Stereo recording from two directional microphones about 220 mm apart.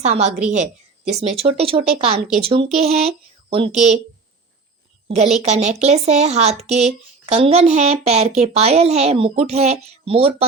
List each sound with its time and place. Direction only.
0.0 s a woman's voice: 30° right (ahead or behind)
5.0 s a woman's voice: 30° right (ahead or behind)